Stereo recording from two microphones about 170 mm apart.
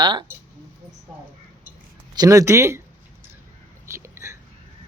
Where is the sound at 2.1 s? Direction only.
20° right (ahead or behind).